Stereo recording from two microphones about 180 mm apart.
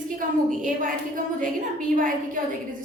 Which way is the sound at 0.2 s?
50° right (ahead or behind).